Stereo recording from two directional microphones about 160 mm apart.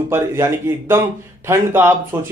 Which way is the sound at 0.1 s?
15° right (ahead or behind).